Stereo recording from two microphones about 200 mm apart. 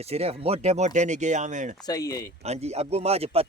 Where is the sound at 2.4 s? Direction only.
30° right (ahead or behind).